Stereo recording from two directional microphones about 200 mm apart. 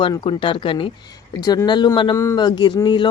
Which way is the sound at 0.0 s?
25° left (ahead or behind).